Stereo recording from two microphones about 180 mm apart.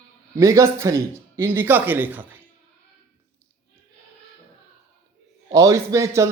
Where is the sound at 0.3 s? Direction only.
15° right (ahead or behind).